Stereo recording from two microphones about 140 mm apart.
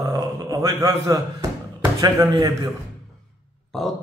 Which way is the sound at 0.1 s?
25° right (ahead or behind).